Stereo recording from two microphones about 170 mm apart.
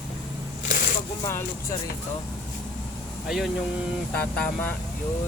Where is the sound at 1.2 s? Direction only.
15° left (ahead or behind).